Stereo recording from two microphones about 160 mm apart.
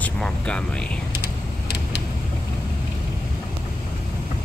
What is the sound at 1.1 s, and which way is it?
Vehicle, 90° left.